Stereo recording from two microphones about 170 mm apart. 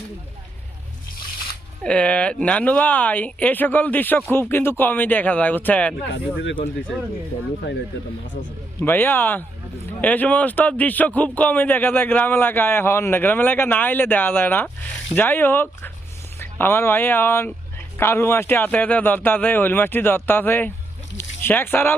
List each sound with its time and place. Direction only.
1.8 s a man's voice: 5° left (ahead or behind)
6.1 s speech: 90° left
8.8 s a man's voice: 10° left (ahead or behind)